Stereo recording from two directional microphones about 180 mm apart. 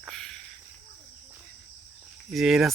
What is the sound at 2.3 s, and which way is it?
Speech, centre (ahead or behind).